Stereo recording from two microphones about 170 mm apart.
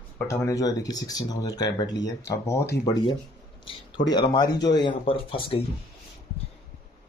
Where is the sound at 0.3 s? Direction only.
20° left (ahead or behind).